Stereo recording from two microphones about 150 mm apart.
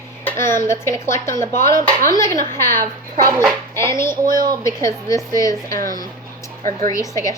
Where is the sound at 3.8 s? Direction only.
15° left (ahead or behind).